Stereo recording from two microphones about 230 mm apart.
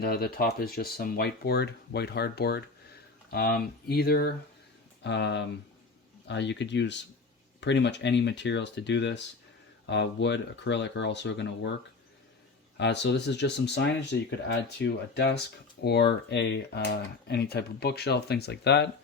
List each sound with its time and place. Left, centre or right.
0.0 s speech: left
12.7 s speech: left